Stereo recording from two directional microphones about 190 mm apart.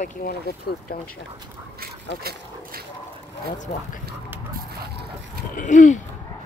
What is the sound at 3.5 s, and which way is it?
Speech, 40° left (ahead or behind).